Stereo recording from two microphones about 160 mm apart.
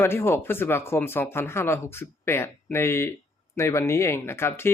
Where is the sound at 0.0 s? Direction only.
15° left (ahead or behind).